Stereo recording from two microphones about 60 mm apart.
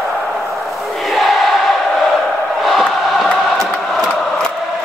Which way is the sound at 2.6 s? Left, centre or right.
Centre.